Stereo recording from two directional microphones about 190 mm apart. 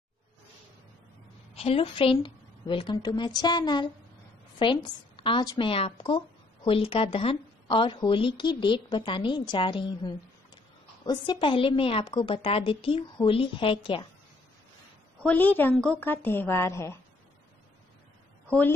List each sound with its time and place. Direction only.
1.5 s a woman's voice: 30° left (ahead or behind)
15.2 s a woman's voice: 10° left (ahead or behind)